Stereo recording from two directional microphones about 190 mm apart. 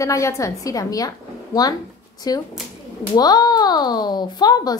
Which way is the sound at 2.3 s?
20° left (ahead or behind).